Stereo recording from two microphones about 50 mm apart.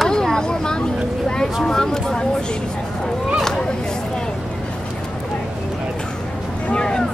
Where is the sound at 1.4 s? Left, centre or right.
Centre.